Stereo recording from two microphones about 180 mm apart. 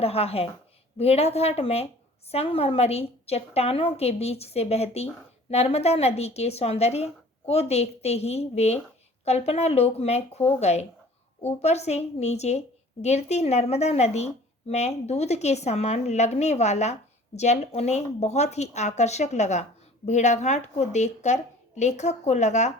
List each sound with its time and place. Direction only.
0.0 s a woman's voice: 35° left (ahead or behind)